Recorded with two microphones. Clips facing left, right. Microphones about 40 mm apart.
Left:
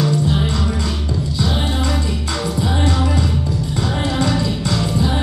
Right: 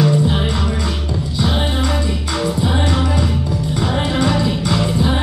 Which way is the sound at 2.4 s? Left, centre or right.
Right.